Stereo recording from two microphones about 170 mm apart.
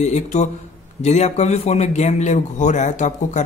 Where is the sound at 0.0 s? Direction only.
45° left (ahead or behind).